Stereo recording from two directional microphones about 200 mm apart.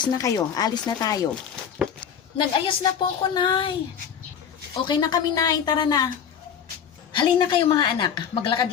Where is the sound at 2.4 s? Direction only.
25° left (ahead or behind).